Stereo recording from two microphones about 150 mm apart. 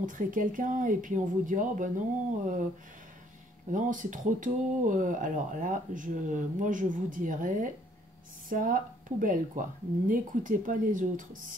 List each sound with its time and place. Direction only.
0.0 s speech: 60° right (ahead or behind)
3.7 s speech: 60° right (ahead or behind)